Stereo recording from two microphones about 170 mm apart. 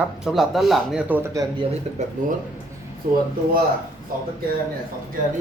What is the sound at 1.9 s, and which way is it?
Speech, 40° right (ahead or behind).